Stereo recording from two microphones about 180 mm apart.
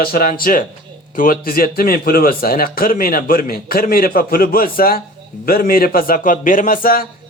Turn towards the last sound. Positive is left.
turn(degrees=50)  # may be behind; listen again after turning